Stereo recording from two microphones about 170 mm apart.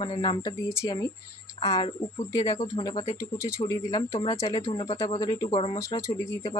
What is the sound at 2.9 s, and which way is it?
Speech, 35° left (ahead or behind).